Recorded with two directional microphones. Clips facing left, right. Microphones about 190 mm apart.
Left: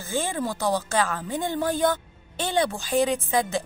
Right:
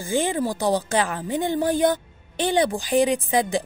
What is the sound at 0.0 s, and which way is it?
A woman's voice, 15° right (ahead or behind).